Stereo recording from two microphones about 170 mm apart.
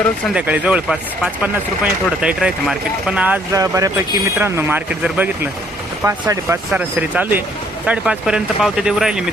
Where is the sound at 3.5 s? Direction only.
20° right (ahead or behind).